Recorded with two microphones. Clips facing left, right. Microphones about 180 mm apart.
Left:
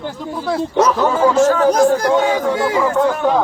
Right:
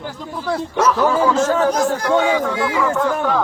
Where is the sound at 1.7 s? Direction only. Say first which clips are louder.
Left 4 dB; 40° left (ahead or behind).